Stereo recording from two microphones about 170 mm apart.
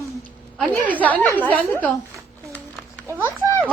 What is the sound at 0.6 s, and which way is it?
A woman's voice, 10° left (ahead or behind).